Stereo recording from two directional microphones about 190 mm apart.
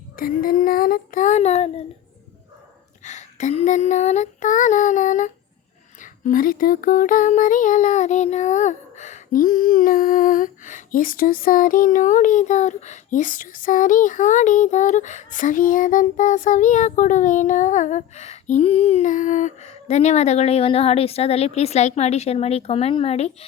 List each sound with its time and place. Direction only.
0.2 s child singing: 50° left (ahead or behind)
3.0 s female singing: 40° left (ahead or behind)
6.0 s a sound: 45° left (ahead or behind)